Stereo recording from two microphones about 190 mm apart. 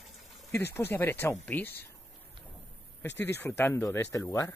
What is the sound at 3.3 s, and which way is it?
Speech, 10° left (ahead or behind).